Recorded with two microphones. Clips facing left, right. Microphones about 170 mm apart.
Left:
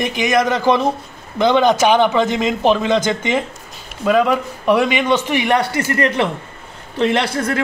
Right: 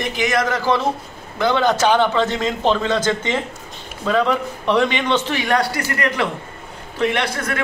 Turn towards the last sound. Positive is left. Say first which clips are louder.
# left 4 dB
turn(degrees=30)  # may be behind; listen again after turning